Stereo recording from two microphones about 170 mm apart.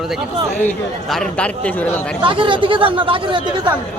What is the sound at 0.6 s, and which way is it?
A man's voice, centre (ahead or behind).